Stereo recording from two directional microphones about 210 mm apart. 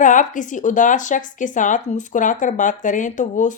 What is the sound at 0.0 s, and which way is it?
Speech, 35° left (ahead or behind).